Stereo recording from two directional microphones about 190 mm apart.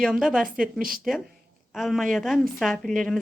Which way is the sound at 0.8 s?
50° right (ahead or behind).